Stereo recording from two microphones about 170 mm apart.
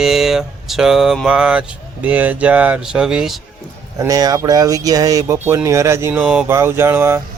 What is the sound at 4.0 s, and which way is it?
Speech, 20° right (ahead or behind).